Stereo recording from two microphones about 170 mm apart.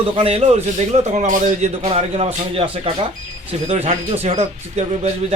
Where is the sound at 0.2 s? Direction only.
35° right (ahead or behind).